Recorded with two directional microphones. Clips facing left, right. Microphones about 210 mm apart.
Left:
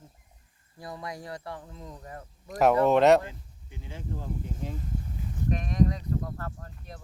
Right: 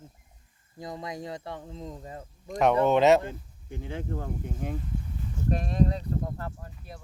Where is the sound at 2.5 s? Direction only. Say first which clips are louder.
Left 1 dB; 5° left (ahead or behind).